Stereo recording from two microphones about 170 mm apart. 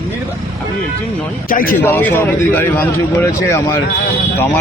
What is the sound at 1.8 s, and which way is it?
A man's voice, 10° left (ahead or behind).